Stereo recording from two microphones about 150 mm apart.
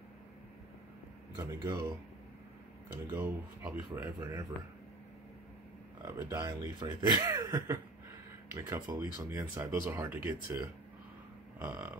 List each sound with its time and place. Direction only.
1.3 s speech: 25° right (ahead or behind)
6.0 s speech: 15° right (ahead or behind)
11.6 s speech: 15° right (ahead or behind)